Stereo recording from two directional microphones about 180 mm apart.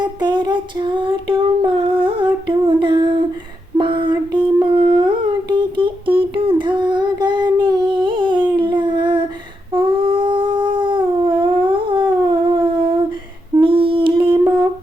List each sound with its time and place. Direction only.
0.0 s a sound: 25° right (ahead or behind)
3.8 s humming: 25° right (ahead or behind)
8.5 s howl: 25° right (ahead or behind)
9.7 s dog: 30° right (ahead or behind)
13.6 s humming: 30° right (ahead or behind)